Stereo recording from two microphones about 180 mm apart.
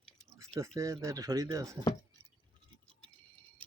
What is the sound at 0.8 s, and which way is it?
Speech, 15° right (ahead or behind).